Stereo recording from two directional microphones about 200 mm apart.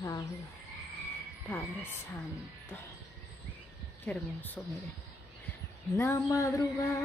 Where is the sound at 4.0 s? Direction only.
10° left (ahead or behind).